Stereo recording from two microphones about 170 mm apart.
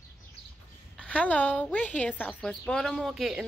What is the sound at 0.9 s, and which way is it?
A woman's voice, 5° left (ahead or behind).